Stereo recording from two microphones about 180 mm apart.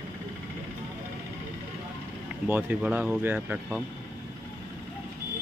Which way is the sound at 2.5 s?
10° right (ahead or behind).